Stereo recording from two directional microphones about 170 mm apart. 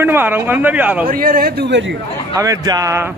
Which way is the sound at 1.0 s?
55° right (ahead or behind).